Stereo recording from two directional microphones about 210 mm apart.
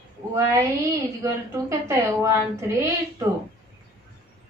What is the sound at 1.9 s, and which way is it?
Speech, 15° right (ahead or behind).